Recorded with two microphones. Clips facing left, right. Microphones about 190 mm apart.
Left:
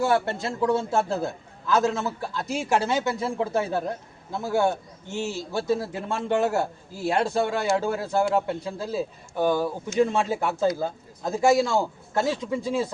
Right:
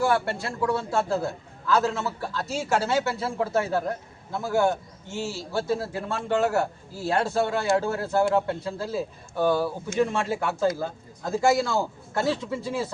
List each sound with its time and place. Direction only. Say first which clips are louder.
0.0 s a man's voice: left 1 dB; 20° left (ahead or behind)